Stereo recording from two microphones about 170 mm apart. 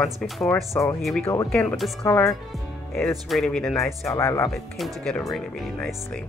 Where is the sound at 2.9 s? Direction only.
Centre (ahead or behind).